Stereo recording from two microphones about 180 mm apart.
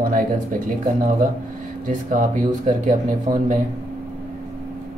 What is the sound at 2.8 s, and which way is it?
Speech, 45° right (ahead or behind).